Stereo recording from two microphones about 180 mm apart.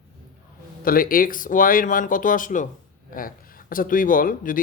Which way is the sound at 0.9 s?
50° left (ahead or behind).